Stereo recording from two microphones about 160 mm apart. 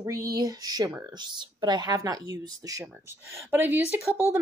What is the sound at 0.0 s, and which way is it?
A woman's voice, 20° right (ahead or behind).